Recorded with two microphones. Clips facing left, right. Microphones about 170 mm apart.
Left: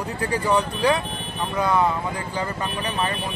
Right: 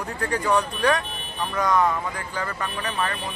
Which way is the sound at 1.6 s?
10° left (ahead or behind).